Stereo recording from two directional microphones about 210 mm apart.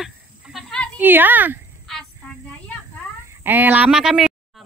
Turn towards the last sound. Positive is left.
turn(degrees=0)  # may be behind; listen again after turning